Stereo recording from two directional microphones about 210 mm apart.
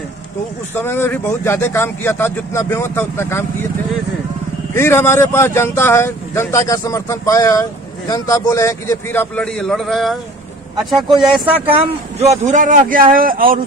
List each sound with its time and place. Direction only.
0.7 s a man's voice: 10° left (ahead or behind)
4.7 s a man's voice: 10° left (ahead or behind)
11.7 s a man's voice: 30° right (ahead or behind)